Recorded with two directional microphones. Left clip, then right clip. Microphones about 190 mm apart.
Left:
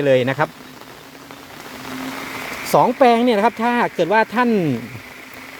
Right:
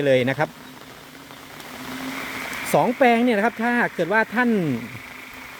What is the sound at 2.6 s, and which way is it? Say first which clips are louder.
Speech: left 4 dB; centre (ahead or behind).